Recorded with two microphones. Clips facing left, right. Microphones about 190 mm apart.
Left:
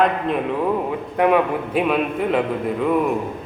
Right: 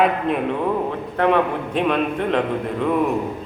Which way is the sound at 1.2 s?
10° left (ahead or behind).